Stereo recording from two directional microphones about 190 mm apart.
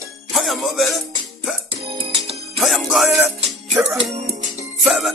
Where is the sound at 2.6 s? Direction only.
Centre (ahead or behind).